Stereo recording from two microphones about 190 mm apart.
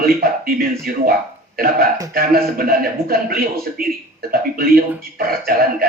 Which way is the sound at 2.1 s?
50° right (ahead or behind).